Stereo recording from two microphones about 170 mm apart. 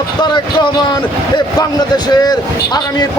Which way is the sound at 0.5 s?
25° left (ahead or behind).